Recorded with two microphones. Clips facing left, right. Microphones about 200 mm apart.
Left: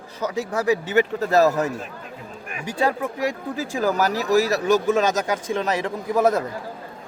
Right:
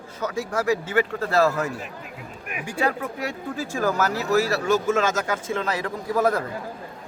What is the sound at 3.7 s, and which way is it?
A man's voice, 15° left (ahead or behind).